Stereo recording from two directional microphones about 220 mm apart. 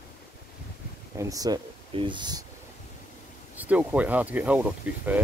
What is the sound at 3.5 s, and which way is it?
Speech, 5° right (ahead or behind).